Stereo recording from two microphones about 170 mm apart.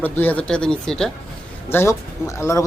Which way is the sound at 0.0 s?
10° left (ahead or behind).